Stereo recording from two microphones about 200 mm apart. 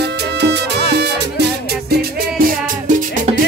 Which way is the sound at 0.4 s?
55° right (ahead or behind).